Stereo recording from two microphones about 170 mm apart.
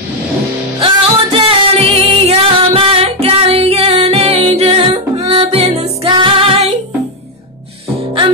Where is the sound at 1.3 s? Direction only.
35° right (ahead or behind).